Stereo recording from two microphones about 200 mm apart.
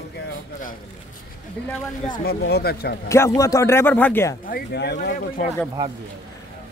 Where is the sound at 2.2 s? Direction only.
55° left (ahead or behind).